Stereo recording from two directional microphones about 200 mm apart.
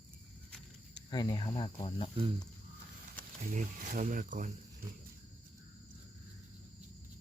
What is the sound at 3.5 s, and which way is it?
Speech, 40° right (ahead or behind).